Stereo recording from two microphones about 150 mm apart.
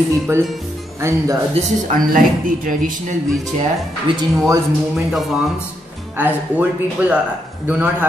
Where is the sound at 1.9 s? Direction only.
65° right (ahead or behind).